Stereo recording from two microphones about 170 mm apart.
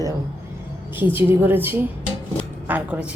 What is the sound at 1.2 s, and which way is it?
A man's voice, 10° right (ahead or behind).